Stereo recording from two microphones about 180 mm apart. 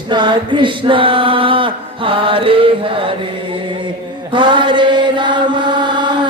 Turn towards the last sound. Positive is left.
turn(degrees=-25)  # may be behind; listen again after turning